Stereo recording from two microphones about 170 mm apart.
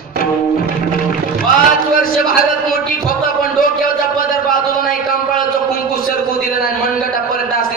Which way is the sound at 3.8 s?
55° left (ahead or behind).